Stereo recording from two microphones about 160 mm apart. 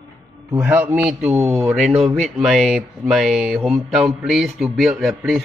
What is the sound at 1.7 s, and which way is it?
A man's voice, centre (ahead or behind).